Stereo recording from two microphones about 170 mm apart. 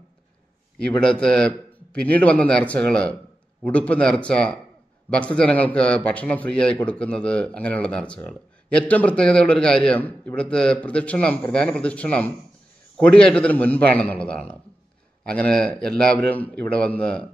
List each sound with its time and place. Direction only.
0.7 s a man's voice: 5° left (ahead or behind)